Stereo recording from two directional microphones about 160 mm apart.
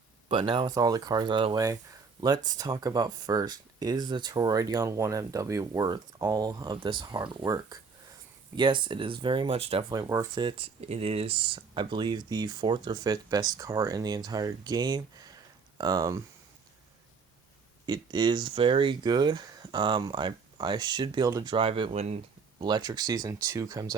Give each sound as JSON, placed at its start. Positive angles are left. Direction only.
{"t": 0.3, "sound": "speech", "side_deg": -30}
{"t": 1.5, "sound": "speech", "side_deg": -20}
{"t": 9.9, "sound": "speech", "side_deg": -20}
{"t": 10.8, "sound": "speech", "side_deg": -40}
{"t": 17.8, "sound": "speech", "side_deg": -25}
{"t": 21.5, "sound": "speech", "side_deg": -35}
{"t": 22.6, "sound": "speech", "side_deg": -25}